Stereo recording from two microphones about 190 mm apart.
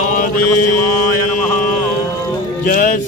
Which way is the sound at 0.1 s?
45° left (ahead or behind).